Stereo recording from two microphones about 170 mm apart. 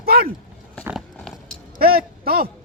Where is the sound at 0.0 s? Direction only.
65° right (ahead or behind).